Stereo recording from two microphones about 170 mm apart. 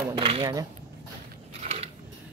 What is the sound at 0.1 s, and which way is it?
Speech, 30° right (ahead or behind).